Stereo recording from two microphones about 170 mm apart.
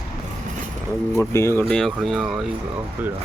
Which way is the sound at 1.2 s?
15° left (ahead or behind).